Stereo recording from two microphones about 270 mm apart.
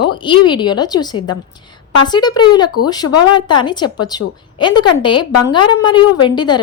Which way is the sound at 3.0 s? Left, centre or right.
Left.